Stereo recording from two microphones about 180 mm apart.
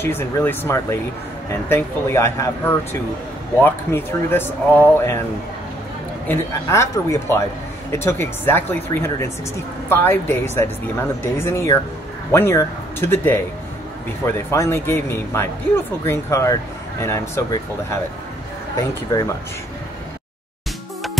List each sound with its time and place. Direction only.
0.0 s speech: 10° left (ahead or behind)
6.2 s speech: 15° left (ahead or behind)